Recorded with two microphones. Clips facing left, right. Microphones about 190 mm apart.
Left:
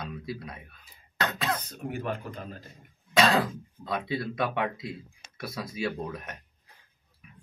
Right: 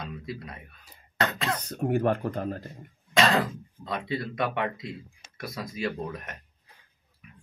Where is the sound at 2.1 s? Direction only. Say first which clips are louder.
Right 8 dB; 45° right (ahead or behind).